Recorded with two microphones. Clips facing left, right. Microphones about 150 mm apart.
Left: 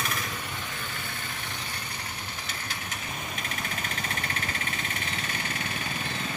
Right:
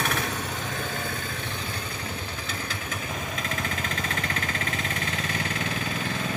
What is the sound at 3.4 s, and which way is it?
Vehicle, 90° right.